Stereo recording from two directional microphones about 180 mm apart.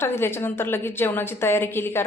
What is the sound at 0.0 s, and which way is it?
A woman's voice, 15° left (ahead or behind).